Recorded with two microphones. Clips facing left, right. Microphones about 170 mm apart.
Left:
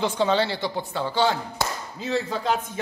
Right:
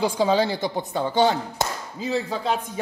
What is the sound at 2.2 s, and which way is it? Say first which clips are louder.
Speech: left 1 dB; centre (ahead or behind).